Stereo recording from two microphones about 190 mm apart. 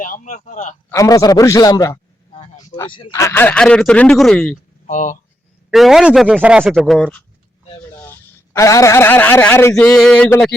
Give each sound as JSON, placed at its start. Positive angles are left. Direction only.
{"t": 0.0, "sound": "a man's voice", "side_deg": 45}
{"t": 0.9, "sound": "a man's voice", "side_deg": 15}
{"t": 3.2, "sound": "speech", "side_deg": 15}
{"t": 4.9, "sound": "a man's voice", "side_deg": 40}
{"t": 5.7, "sound": "speech", "side_deg": 0}